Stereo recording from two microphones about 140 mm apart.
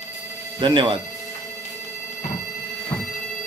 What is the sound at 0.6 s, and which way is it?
Speech, 35° right (ahead or behind).